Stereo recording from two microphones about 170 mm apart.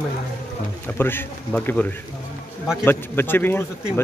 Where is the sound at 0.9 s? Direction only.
10° left (ahead or behind).